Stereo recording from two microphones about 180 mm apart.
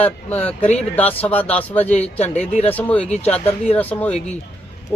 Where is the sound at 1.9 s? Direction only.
35° left (ahead or behind).